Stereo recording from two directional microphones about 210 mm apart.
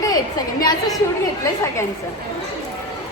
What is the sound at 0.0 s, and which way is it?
A woman's voice, 15° left (ahead or behind).